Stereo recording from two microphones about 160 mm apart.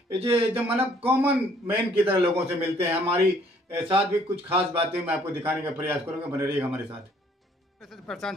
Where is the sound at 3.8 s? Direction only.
35° right (ahead or behind).